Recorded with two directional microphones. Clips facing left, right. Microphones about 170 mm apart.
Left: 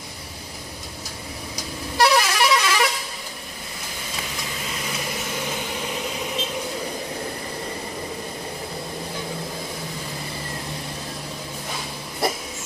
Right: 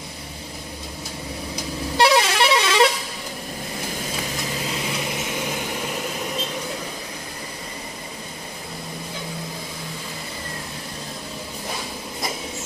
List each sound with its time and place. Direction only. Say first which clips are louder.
2.0 s air horn: right 1 dB; 25° right (ahead or behind)